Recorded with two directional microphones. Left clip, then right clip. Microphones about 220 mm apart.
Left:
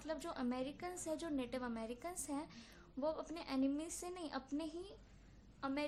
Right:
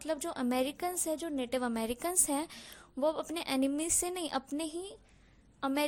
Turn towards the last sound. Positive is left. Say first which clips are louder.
# right 9 dB
turn(degrees=-40)  # may be behind; listen again after turning